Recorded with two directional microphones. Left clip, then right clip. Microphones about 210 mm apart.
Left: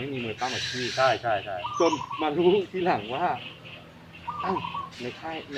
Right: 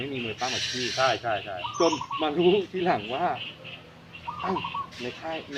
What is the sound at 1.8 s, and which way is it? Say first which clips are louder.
Speech: even; centre (ahead or behind).